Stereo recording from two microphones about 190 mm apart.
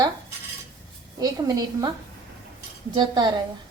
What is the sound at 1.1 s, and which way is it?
Speech, 20° right (ahead or behind).